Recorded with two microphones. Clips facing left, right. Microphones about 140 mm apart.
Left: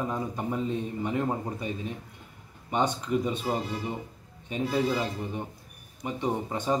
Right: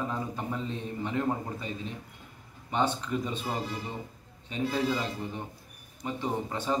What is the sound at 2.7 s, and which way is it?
Speech, 15° left (ahead or behind).